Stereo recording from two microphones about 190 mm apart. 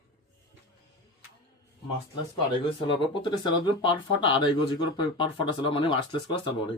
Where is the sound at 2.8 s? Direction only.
25° left (ahead or behind).